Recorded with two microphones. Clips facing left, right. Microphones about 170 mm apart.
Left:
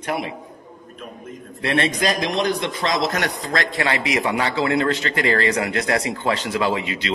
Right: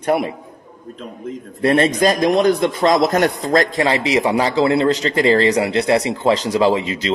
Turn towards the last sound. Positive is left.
turn(degrees=-35)  # may be behind; listen again after turning